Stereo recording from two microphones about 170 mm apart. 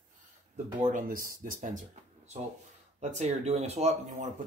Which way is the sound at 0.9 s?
50° right (ahead or behind).